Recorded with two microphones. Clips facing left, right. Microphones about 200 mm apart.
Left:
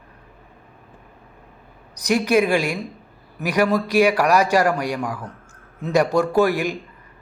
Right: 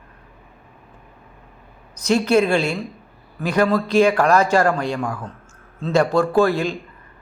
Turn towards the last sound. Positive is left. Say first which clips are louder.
# right 1 dB
turn(degrees=15)  # may be behind; listen again after turning